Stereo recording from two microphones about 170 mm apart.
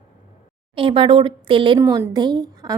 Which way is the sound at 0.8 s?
30° right (ahead or behind).